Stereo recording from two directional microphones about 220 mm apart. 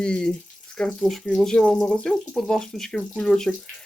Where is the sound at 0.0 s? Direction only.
5° left (ahead or behind).